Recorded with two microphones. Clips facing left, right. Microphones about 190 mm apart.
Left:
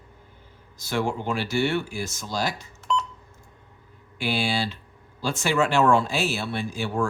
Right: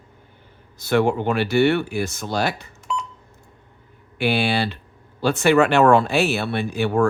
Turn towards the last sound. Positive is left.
turn(degrees=-60)  # may be behind; listen again after turning